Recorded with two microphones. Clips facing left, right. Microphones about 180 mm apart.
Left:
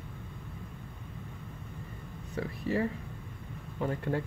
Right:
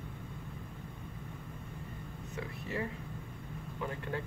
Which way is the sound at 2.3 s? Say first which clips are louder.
Left 8 dB; 35° left (ahead or behind).